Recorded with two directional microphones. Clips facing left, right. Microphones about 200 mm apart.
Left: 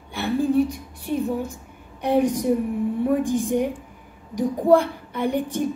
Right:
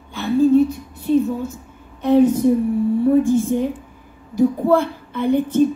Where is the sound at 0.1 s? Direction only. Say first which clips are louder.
Right 7 dB; 15° left (ahead or behind).